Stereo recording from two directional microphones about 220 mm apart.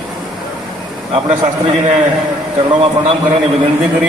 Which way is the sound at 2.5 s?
25° right (ahead or behind).